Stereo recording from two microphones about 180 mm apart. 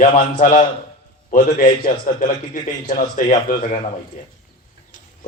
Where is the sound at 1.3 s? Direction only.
50° left (ahead or behind).